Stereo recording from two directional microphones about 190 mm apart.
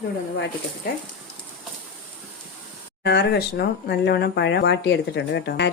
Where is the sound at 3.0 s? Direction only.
60° left (ahead or behind).